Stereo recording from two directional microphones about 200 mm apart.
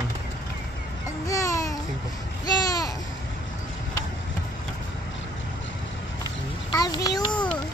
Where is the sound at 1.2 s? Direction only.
15° left (ahead or behind).